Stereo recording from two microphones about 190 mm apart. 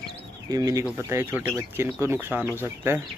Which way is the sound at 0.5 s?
20° right (ahead or behind).